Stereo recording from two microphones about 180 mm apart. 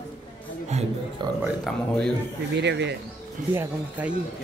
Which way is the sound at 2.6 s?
75° right (ahead or behind).